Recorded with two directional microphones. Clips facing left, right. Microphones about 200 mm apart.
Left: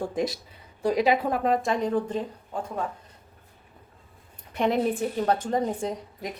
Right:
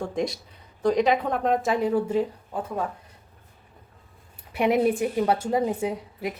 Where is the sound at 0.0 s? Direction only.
Centre (ahead or behind).